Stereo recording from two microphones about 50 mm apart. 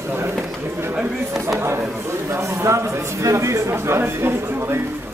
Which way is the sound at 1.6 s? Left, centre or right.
Right.